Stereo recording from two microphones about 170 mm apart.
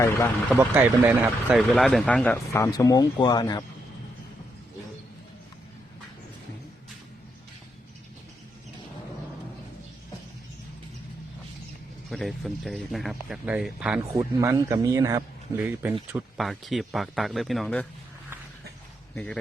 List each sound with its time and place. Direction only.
0.5 s speech: 10° right (ahead or behind)
1.7 s speech: centre (ahead or behind); by 3.6 s 25° left (ahead or behind)
12.1 s speech: centre (ahead or behind)
14.1 s speech: 20° right (ahead or behind)
16.1 s speech: centre (ahead or behind)
19.1 s speech: 5° left (ahead or behind)